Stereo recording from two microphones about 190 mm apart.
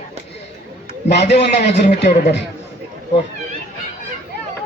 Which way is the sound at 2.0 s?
60° left (ahead or behind).